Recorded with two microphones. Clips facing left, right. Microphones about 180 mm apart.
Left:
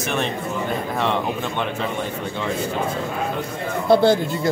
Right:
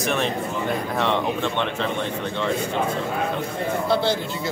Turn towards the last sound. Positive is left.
turn(degrees=50)  # may be behind; listen again after turning